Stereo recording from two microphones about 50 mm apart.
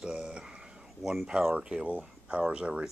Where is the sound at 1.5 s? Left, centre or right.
Right.